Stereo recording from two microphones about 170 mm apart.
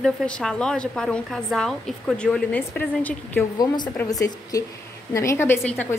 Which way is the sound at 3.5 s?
25° left (ahead or behind).